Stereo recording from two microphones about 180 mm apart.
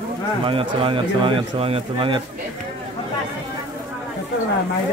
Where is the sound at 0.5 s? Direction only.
30° right (ahead or behind).